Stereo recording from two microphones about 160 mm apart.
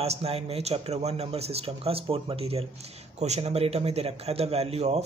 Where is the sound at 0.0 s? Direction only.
40° right (ahead or behind).